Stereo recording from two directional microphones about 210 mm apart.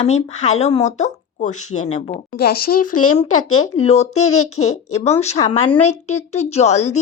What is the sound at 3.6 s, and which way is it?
A woman's voice, 30° left (ahead or behind).